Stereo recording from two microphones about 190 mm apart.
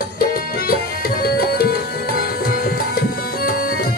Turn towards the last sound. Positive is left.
turn(degrees=50)  # may be behind; listen again after turning